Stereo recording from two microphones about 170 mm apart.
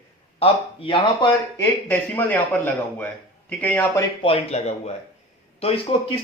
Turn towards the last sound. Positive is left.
turn(degrees=35)  # may be behind; listen again after turning